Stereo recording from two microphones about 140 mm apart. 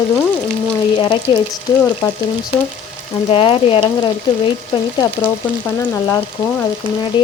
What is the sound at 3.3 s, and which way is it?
Frying, 40° left (ahead or behind).